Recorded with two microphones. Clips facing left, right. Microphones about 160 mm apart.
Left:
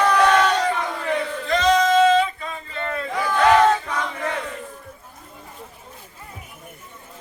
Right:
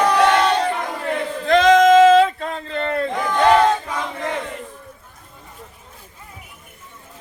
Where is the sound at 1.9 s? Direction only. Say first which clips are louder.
Right 6 dB; 90° right; by 3.1 s 65° right (ahead or behind).